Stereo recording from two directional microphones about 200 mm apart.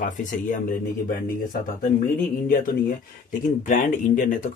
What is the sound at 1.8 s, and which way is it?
Speech, 45° left (ahead or behind).